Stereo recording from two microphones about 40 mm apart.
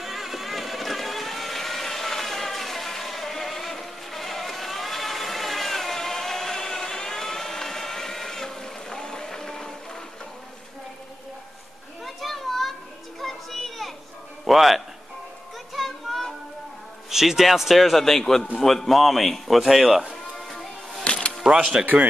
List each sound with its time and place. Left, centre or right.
0.0 s vehicle: centre
12.0 s children playing: centre
14.4 s speech: centre
15.7 s music: centre
17.1 s a man's voice: centre
20.3 s music: centre
21.0 s music: left
21.7 s a man's voice: centre